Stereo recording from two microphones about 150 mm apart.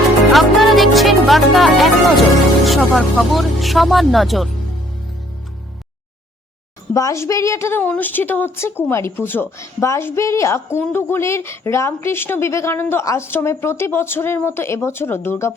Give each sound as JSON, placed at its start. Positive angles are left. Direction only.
{"t": 0.3, "sound": "music", "side_deg": 0}
{"t": 2.6, "sound": "speech", "side_deg": 0}
{"t": 6.9, "sound": "speech", "side_deg": 20}